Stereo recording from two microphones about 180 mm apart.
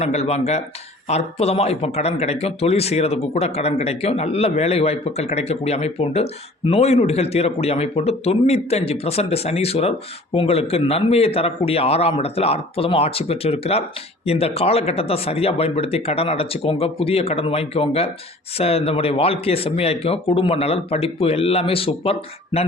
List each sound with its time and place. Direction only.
0.0 s speech: 35° left (ahead or behind)